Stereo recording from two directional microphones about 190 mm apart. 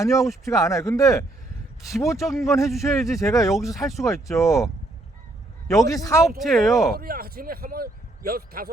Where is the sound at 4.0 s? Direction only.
15° left (ahead or behind).